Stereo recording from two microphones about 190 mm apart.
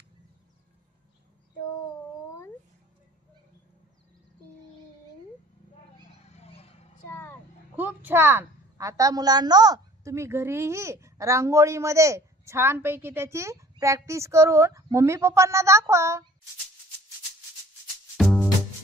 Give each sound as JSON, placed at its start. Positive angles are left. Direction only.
{"t": 6.3, "sound": "a sound", "side_deg": 35}
{"t": 7.1, "sound": "vehicle", "side_deg": 15}
{"t": 7.7, "sound": "a woman's voice", "side_deg": -10}
{"t": 18.1, "sound": "music", "side_deg": 0}